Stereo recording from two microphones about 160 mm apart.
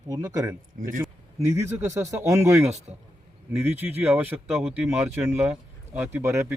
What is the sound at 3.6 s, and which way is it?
Speech, 15° right (ahead or behind).